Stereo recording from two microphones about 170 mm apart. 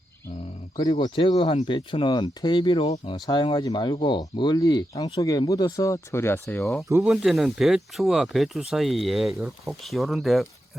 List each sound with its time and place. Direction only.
0.8 s speech: 25° left (ahead or behind)
7.0 s speech: 5° right (ahead or behind)